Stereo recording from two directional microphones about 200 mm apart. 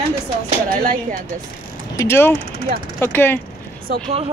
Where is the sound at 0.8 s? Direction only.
45° right (ahead or behind).